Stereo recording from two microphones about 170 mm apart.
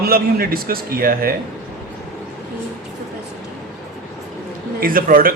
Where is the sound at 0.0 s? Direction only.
60° right (ahead or behind).